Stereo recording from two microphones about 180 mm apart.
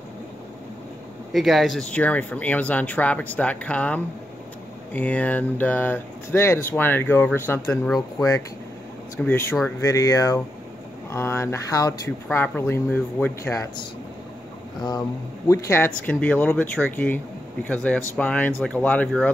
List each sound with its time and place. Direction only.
1.3 s speech: centre (ahead or behind); by 13.8 s 15° left (ahead or behind)
15.4 s speech: 15° left (ahead or behind)